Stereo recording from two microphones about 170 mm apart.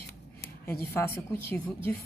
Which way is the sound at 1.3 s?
15° left (ahead or behind).